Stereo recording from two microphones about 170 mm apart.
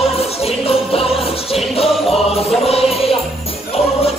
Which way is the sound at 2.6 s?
35° left (ahead or behind).